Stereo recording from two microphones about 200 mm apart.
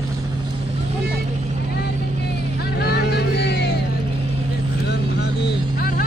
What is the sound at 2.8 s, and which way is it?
Vehicle, 55° left (ahead or behind).